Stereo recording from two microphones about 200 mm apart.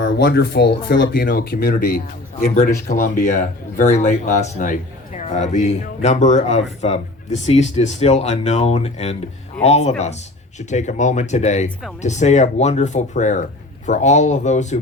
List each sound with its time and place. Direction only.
0.2 s a man's voice: 55° left (ahead or behind); by 14.8 s 35° left (ahead or behind)